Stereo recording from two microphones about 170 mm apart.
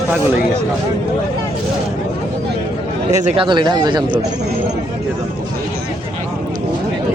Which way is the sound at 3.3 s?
25° right (ahead or behind).